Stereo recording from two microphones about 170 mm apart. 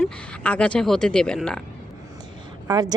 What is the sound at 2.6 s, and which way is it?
Speech, 20° right (ahead or behind).